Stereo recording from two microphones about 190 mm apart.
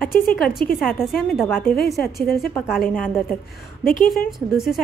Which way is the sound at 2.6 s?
Centre (ahead or behind).